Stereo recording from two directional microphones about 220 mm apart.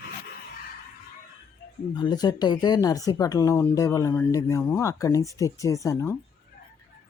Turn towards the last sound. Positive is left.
turn(degrees=10)  # may be behind; listen again after turning